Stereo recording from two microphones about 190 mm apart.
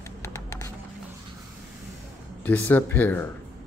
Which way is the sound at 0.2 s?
15° left (ahead or behind).